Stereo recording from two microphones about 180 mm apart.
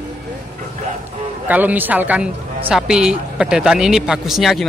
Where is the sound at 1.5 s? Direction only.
10° right (ahead or behind).